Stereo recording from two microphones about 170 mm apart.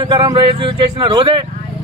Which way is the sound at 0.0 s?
25° right (ahead or behind).